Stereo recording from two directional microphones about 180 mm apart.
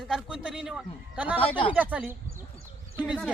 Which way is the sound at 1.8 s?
10° right (ahead or behind).